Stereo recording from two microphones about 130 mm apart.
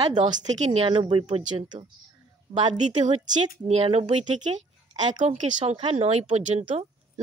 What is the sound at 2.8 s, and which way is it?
Speech, 65° right (ahead or behind).